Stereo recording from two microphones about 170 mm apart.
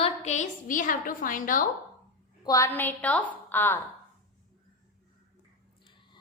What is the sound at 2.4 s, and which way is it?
Speech, 20° left (ahead or behind).